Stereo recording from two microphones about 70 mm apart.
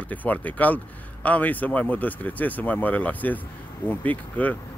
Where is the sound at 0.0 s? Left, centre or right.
Left.